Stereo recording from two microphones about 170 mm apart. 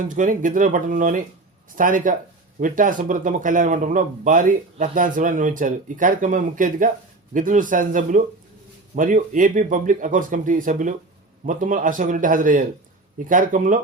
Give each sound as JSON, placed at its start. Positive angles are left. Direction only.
{"t": 0.0, "sound": "speech", "side_deg": -50}